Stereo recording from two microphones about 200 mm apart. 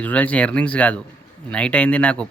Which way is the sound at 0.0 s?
5° left (ahead or behind).